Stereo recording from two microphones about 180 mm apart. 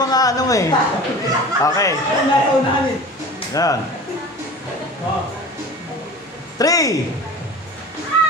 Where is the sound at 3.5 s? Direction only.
20° left (ahead or behind).